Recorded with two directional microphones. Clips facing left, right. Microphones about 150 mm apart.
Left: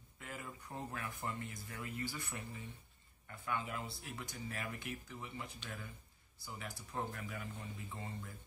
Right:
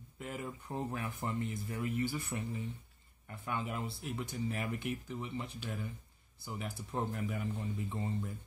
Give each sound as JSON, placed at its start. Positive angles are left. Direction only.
{"t": 0.2, "sound": "speech", "side_deg": -20}